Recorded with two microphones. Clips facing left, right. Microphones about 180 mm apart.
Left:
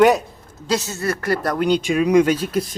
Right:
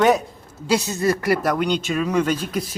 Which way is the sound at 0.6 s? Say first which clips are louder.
Right 2 dB; 15° right (ahead or behind).